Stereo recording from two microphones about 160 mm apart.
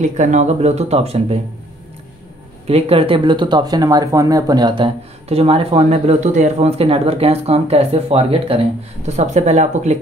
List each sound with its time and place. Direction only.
0.0 s speech: 45° right (ahead or behind)
2.7 s speech: 35° right (ahead or behind)